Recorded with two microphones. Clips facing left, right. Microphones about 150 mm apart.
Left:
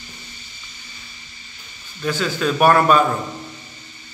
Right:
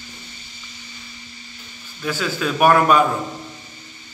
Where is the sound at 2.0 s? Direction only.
5° right (ahead or behind).